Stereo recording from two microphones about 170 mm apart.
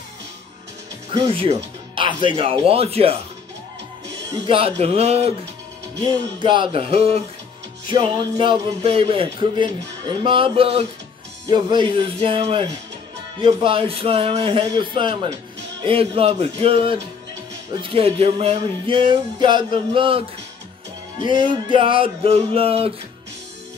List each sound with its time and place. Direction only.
1.1 s speech: 30° right (ahead or behind)
4.5 s speech: 35° right (ahead or behind)
6.4 s speech: 30° right (ahead or behind)